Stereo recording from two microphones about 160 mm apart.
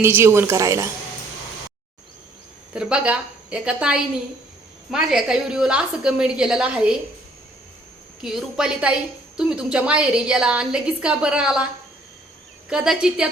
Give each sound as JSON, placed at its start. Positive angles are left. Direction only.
{"t": 0.0, "sound": "a woman's voice", "side_deg": -15}
{"t": 2.7, "sound": "a woman's voice", "side_deg": -5}
{"t": 8.2, "sound": "a woman's voice", "side_deg": 0}
{"t": 12.6, "sound": "a woman's voice", "side_deg": -5}